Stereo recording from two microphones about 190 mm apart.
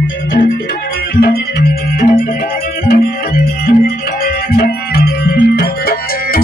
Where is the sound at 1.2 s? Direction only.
50° left (ahead or behind).